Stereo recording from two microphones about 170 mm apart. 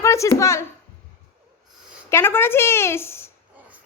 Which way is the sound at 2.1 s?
15° left (ahead or behind).